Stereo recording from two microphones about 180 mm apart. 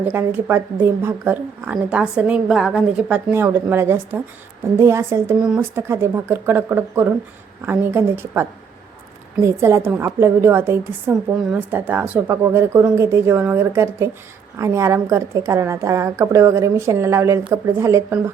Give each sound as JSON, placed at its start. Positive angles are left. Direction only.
{"t": 0.0, "sound": "a woman's voice", "side_deg": -10}
{"t": 5.4, "sound": "a woman's voice", "side_deg": -5}